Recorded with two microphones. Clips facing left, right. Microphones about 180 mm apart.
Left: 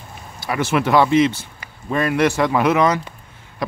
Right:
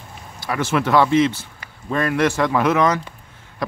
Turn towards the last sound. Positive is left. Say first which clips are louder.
# left 1 dB
turn(degrees=10)  # may be behind; listen again after turning